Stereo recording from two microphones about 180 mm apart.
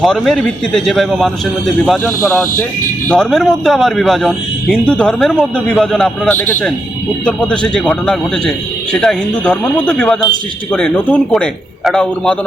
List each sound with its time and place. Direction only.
0.0 s a man's voice: centre (ahead or behind)